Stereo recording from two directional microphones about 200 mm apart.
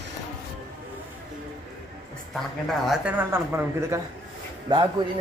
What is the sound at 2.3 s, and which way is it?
A man's voice, centre (ahead or behind).